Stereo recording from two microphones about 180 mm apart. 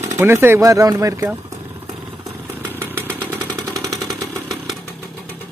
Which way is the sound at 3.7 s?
20° right (ahead or behind).